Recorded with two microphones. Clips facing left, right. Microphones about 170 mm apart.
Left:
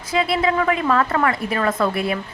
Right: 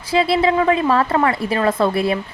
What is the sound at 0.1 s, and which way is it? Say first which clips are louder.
A woman's voice: right 4 dB; 30° right (ahead or behind).